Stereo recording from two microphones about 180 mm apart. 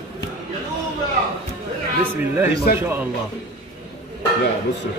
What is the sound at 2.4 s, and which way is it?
Speech, 10° right (ahead or behind).